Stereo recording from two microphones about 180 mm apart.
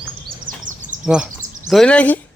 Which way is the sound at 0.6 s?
45° right (ahead or behind).